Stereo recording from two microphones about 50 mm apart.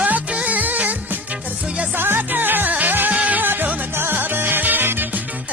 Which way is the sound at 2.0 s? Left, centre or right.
Right.